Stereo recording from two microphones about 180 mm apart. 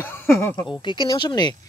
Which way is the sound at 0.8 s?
25° left (ahead or behind).